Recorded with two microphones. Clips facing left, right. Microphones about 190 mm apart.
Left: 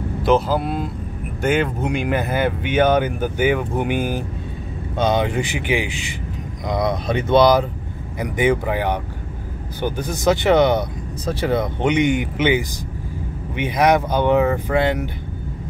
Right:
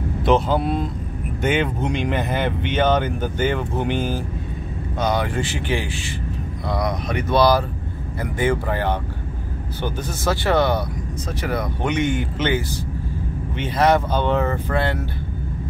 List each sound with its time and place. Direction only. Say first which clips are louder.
0.2 s speech: left 1 dB; centre (ahead or behind)
4.9 s speech: left 3 dB; 25° left (ahead or behind)